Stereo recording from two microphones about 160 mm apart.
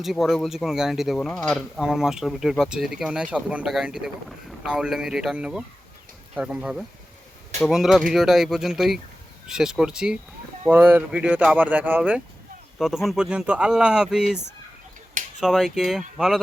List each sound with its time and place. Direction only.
0.0 s speech: centre (ahead or behind)
15.4 s speech: centre (ahead or behind)